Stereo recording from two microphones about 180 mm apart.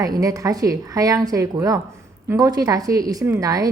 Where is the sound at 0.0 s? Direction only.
20° right (ahead or behind).